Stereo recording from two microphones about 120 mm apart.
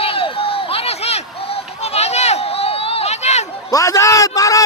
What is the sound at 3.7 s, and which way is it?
Speech, 30° left (ahead or behind).